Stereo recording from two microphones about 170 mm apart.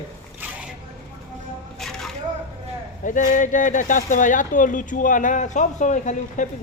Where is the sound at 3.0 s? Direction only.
50° left (ahead or behind).